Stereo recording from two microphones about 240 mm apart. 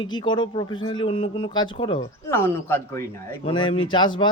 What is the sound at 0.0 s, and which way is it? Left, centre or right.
A man's voice, centre.